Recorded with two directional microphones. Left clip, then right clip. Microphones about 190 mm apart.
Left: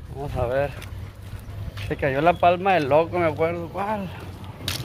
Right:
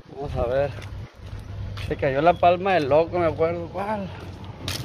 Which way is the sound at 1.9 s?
5° left (ahead or behind).